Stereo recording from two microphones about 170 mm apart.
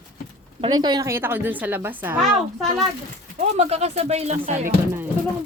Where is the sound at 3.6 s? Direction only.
40° right (ahead or behind).